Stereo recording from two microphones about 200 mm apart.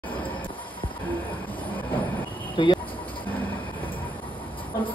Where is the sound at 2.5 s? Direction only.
25° left (ahead or behind).